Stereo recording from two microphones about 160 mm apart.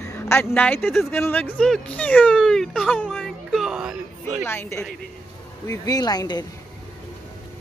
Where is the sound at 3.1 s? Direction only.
Centre (ahead or behind).